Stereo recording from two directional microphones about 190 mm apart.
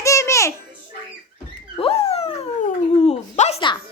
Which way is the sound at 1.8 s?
30° left (ahead or behind).